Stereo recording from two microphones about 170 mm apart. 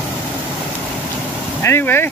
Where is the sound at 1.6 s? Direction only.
15° left (ahead or behind).